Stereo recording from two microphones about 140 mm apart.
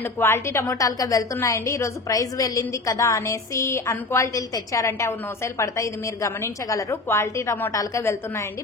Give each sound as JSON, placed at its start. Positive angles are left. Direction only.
{"t": 0.2, "sound": "a woman's voice", "side_deg": 20}